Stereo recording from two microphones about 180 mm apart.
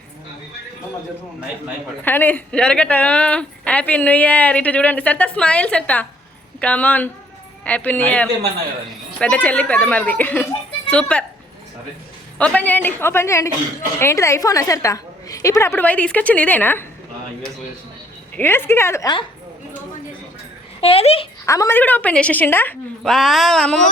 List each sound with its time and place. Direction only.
2.0 s speech: 10° left (ahead or behind)
12.4 s speech: 10° left (ahead or behind)
18.3 s speech: 10° left (ahead or behind)
20.8 s speech: 35° left (ahead or behind)
21.4 s speech: 15° left (ahead or behind)